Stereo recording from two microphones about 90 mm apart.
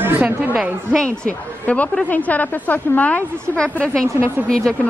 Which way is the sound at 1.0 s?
15° left (ahead or behind).